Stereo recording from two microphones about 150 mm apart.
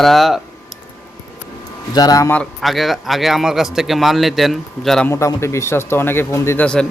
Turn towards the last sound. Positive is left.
turn(degrees=20)  # may be behind; listen again after turning